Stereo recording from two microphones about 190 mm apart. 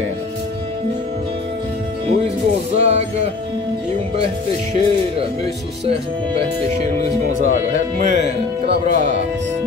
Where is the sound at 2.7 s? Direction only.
35° right (ahead or behind).